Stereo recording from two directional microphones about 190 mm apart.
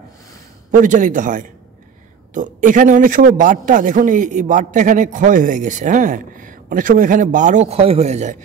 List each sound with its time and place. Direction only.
0.7 s a man's voice: 45° right (ahead or behind)